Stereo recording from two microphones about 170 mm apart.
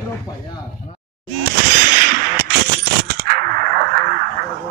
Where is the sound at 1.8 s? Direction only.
65° right (ahead or behind).